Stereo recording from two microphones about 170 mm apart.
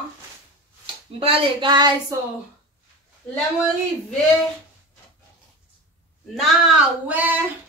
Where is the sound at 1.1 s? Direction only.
30° right (ahead or behind).